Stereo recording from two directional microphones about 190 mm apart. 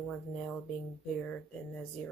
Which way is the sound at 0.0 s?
5° left (ahead or behind).